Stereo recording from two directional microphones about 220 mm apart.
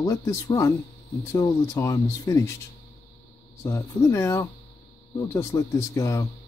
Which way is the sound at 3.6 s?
10° left (ahead or behind).